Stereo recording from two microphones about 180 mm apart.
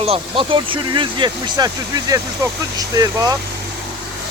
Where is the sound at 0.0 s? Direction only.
30° right (ahead or behind).